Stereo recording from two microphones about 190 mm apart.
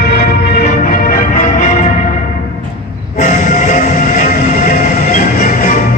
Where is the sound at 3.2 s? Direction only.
40° left (ahead or behind).